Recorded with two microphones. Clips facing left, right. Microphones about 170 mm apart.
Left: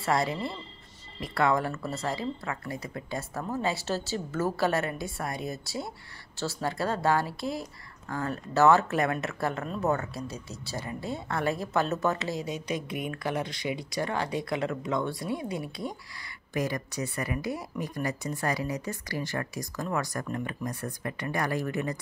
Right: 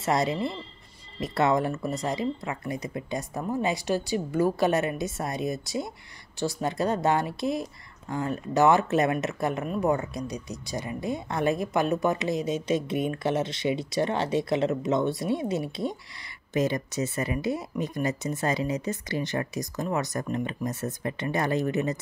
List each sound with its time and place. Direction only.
0.0 s speech: 20° right (ahead or behind)